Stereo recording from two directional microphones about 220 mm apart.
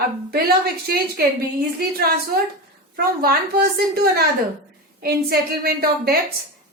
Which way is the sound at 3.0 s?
45° right (ahead or behind).